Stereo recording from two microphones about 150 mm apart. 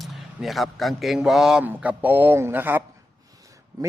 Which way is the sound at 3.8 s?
25° right (ahead or behind).